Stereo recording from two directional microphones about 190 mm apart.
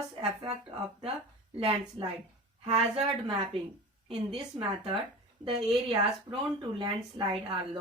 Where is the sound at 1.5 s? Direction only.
30° right (ahead or behind).